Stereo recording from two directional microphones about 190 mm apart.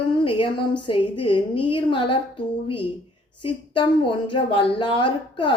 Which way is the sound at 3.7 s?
25° left (ahead or behind).